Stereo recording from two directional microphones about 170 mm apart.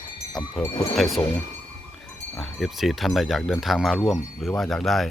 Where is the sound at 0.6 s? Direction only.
20° left (ahead or behind).